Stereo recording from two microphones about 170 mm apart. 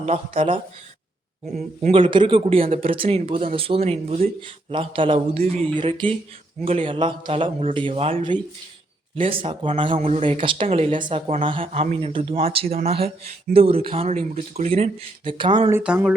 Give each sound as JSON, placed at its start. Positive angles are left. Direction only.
{"t": 0.0, "sound": "speech", "side_deg": -35}
{"t": 9.1, "sound": "speech", "side_deg": -30}
{"t": 15.7, "sound": "speech", "side_deg": -10}